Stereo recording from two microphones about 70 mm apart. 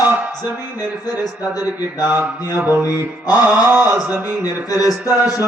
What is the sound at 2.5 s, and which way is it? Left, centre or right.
Mantra, right.